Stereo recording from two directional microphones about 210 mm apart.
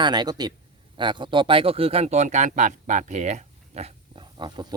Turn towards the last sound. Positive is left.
turn(degrees=-20)  # may be behind; listen again after turning